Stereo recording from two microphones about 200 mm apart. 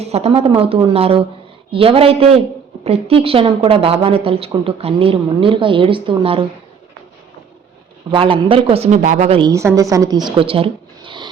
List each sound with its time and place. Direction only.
0.0 s a woman's voice: 30° right (ahead or behind)
8.1 s a woman's voice: 25° right (ahead or behind)
9.4 s a woman's voice: 15° right (ahead or behind)